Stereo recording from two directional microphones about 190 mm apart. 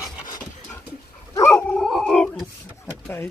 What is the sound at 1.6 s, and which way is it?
Dog, 5° left (ahead or behind).